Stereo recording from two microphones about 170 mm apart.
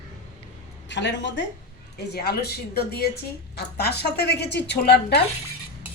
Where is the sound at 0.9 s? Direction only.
90° left.